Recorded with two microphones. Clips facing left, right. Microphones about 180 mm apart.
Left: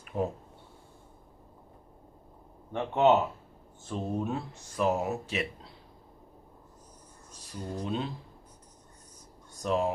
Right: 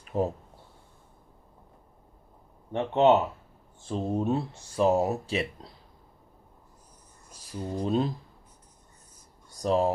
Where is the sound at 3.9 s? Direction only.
30° right (ahead or behind).